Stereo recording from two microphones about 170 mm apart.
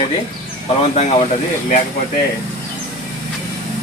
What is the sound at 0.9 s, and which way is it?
Speech, 40° left (ahead or behind).